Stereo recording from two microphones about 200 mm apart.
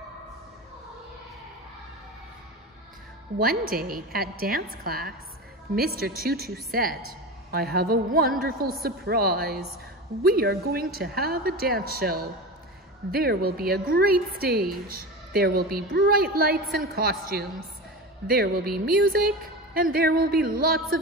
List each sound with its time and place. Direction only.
3.3 s a woman's voice: 45° right (ahead or behind)